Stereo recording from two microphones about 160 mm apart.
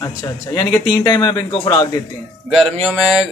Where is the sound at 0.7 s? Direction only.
15° left (ahead or behind).